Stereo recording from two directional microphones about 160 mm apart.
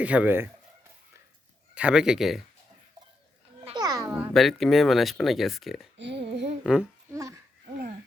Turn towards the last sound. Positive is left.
turn(degrees=-20)  # may be behind; listen again after turning